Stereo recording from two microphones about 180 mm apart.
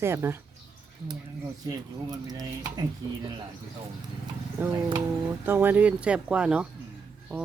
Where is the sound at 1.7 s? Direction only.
20° right (ahead or behind).